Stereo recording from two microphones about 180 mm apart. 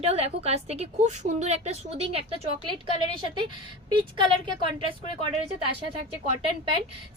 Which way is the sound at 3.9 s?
25° right (ahead or behind).